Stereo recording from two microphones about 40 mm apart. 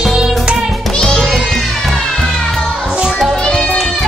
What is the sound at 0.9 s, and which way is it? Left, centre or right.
Music, centre.